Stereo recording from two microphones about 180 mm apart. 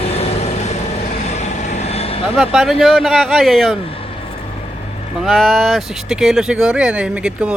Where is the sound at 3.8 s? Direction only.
30° left (ahead or behind).